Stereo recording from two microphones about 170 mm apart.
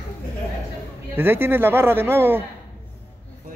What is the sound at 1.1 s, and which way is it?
Speech, 15° right (ahead or behind).